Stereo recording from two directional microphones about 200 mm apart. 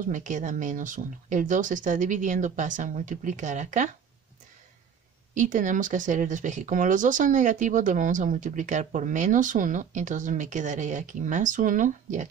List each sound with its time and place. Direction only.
0.0 s speech: 40° right (ahead or behind)
5.3 s speech: 40° right (ahead or behind)